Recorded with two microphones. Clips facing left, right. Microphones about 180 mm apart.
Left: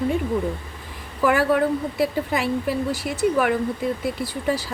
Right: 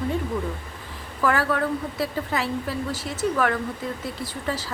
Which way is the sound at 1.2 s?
15° left (ahead or behind).